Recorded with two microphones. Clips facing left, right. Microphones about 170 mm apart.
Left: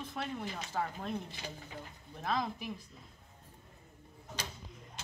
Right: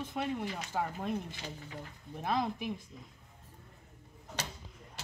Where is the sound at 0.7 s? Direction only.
10° right (ahead or behind).